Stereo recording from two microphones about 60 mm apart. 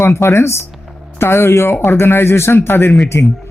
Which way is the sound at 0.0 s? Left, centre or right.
Left.